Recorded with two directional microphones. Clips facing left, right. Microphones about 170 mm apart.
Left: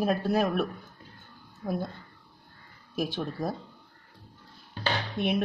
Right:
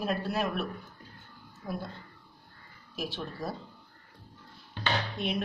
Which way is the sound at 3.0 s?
50° left (ahead or behind).